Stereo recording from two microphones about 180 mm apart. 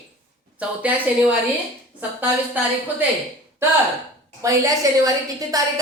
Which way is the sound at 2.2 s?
10° right (ahead or behind).